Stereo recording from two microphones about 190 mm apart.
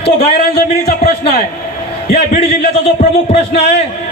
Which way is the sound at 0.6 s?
55° left (ahead or behind).